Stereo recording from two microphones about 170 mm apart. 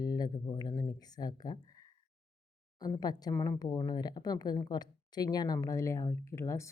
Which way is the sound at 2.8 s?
25° left (ahead or behind).